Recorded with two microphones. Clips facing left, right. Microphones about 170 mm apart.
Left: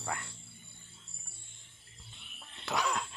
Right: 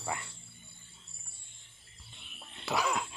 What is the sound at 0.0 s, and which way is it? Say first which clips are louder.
Speech: right 1 dB; 5° right (ahead or behind).